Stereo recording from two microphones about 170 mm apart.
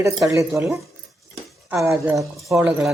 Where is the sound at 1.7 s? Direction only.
Centre (ahead or behind).